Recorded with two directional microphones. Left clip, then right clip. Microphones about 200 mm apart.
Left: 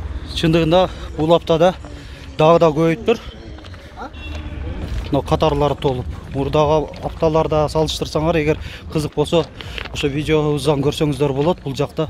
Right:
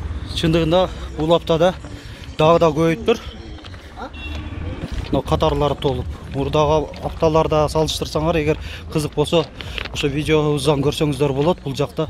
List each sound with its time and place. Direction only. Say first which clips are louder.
0.3 s a man's voice: left 2 dB; 15° left (ahead or behind)
5.1 s speech: left 2 dB; 15° left (ahead or behind)